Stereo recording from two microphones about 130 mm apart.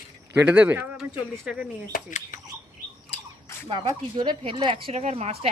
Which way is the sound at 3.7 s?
40° right (ahead or behind).